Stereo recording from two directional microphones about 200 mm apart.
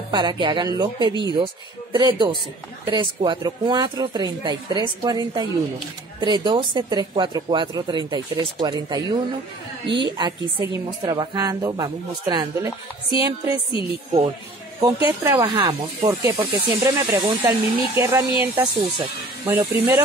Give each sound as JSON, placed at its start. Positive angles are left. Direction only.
{"t": 0.1, "sound": "a woman's voice", "side_deg": -20}
{"t": 14.8, "sound": "speech", "side_deg": -15}